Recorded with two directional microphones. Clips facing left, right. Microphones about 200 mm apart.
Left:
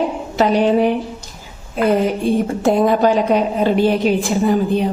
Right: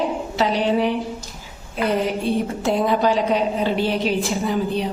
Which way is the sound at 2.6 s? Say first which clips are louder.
Left 5 dB; 50° left (ahead or behind).